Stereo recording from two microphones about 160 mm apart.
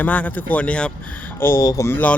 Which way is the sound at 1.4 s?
20° left (ahead or behind).